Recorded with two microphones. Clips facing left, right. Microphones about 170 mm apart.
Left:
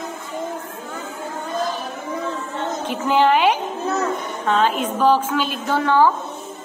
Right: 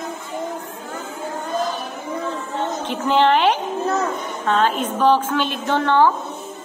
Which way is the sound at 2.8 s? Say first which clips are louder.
Even; 10° left (ahead or behind).